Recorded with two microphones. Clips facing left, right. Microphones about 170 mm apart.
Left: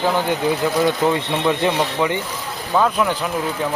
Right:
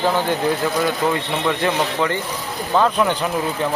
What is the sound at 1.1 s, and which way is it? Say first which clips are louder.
Speech: left 2 dB; 20° left (ahead or behind).